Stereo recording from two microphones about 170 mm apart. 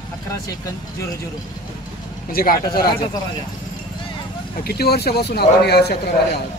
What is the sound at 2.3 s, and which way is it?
Speech, 60° left (ahead or behind).